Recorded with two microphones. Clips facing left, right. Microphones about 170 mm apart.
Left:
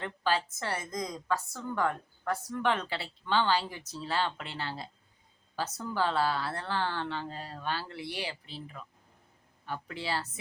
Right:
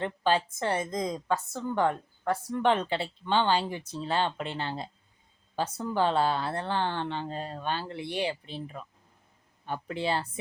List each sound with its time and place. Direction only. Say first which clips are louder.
0.0 s a woman's voice: right 4 dB; 25° right (ahead or behind)